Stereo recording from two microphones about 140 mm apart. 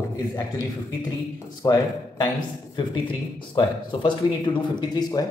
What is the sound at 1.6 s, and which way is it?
A man's voice, 30° left (ahead or behind).